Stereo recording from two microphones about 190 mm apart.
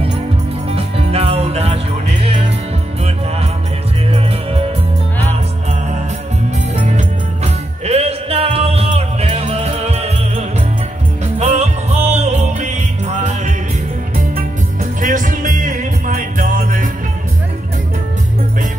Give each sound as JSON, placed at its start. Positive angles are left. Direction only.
{"t": 0.7, "sound": "music", "side_deg": -30}
{"t": 4.1, "sound": "music", "side_deg": -30}
{"t": 7.8, "sound": "music", "side_deg": -35}